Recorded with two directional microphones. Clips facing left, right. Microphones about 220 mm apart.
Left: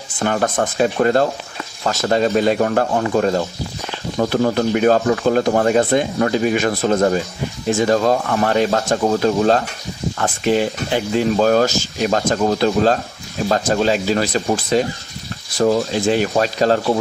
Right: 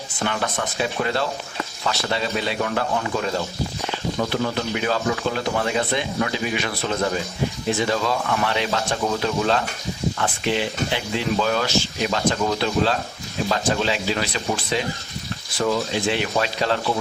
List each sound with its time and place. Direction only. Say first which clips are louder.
0.2 s speech: left 7 dB; 45° left (ahead or behind)